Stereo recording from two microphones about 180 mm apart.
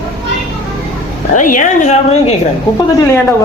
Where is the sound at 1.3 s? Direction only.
45° left (ahead or behind).